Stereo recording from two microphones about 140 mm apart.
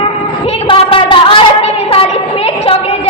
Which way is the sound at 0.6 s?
40° left (ahead or behind).